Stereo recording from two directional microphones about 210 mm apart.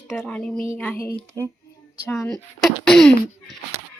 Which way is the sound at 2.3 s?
Centre (ahead or behind).